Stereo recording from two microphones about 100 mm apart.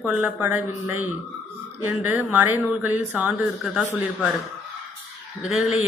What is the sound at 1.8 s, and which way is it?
Speech, 20° right (ahead or behind).